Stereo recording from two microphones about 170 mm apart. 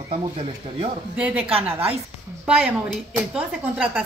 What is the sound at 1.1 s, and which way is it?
Speech, 10° right (ahead or behind).